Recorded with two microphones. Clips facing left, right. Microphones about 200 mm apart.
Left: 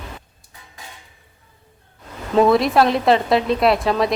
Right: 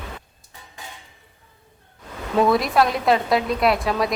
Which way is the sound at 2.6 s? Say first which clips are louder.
Left 3 dB; centre (ahead or behind).